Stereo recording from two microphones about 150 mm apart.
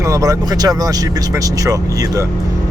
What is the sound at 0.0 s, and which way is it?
Speech, 20° right (ahead or behind).